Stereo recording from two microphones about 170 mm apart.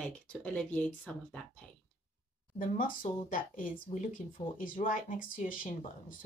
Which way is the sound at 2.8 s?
55° left (ahead or behind).